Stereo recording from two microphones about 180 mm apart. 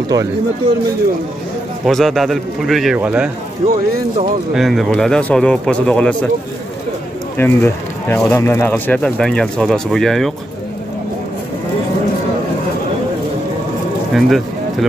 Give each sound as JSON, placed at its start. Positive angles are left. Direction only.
{"t": 0.1, "sound": "speech", "side_deg": -20}
{"t": 1.9, "sound": "a man's voice", "side_deg": 0}
{"t": 4.6, "sound": "a man's voice", "side_deg": 0}
{"t": 7.3, "sound": "speech", "side_deg": 10}
{"t": 14.1, "sound": "a sound", "side_deg": 0}